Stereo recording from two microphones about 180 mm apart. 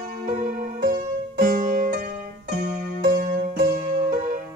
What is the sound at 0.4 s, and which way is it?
Music, 50° right (ahead or behind).